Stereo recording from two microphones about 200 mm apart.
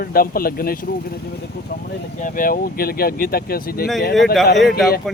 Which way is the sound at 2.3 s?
45° left (ahead or behind).